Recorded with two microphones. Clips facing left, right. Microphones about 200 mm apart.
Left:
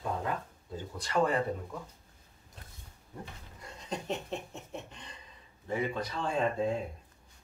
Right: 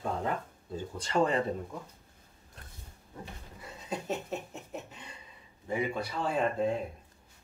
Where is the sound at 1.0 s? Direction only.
25° right (ahead or behind).